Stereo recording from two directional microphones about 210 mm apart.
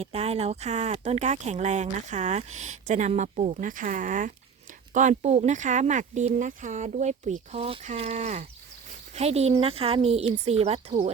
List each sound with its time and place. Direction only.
0.0 s speech: 30° right (ahead or behind)